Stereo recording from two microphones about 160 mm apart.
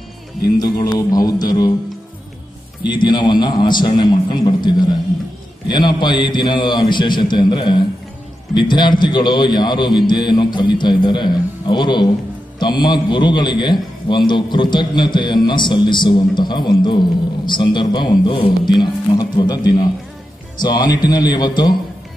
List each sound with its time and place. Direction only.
0.6 s a man's voice: 25° left (ahead or behind)
2.9 s a man's voice: 30° left (ahead or behind)